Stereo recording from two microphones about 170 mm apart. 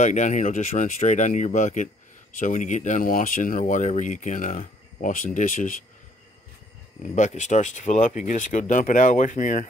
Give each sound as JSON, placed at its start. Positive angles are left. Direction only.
{"t": 0.0, "sound": "speech", "side_deg": 45}
{"t": 7.2, "sound": "speech", "side_deg": 45}